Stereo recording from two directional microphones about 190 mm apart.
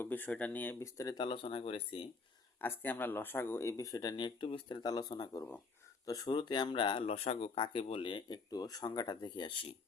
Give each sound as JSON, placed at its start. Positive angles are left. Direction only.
{"t": 0.0, "sound": "speech", "side_deg": 10}
{"t": 2.6, "sound": "speech", "side_deg": 10}